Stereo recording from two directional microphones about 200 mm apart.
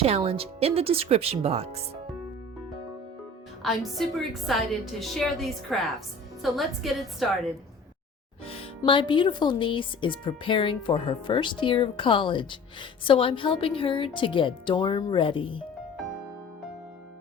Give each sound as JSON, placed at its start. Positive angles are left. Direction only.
{"t": 0.0, "sound": "speech", "side_deg": -30}
{"t": 3.6, "sound": "a woman's voice", "side_deg": 0}
{"t": 8.4, "sound": "speech", "side_deg": 25}